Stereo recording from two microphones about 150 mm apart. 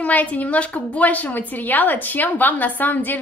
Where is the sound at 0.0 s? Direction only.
10° left (ahead or behind).